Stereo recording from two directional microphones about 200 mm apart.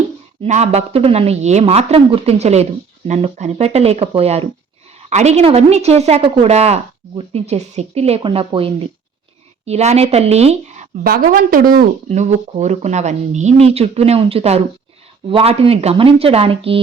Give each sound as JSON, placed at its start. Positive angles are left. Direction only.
{"t": 0.4, "sound": "a woman's voice", "side_deg": -35}
{"t": 11.0, "sound": "a woman's voice", "side_deg": -45}